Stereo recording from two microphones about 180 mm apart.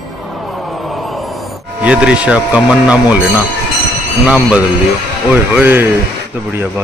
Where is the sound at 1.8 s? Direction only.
5° right (ahead or behind).